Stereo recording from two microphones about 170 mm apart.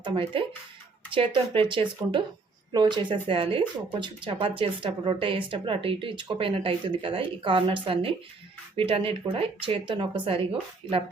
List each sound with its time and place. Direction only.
0.0 s speech: 30° right (ahead or behind)